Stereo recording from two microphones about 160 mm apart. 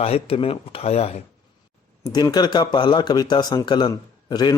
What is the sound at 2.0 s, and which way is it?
Speech, 25° left (ahead or behind).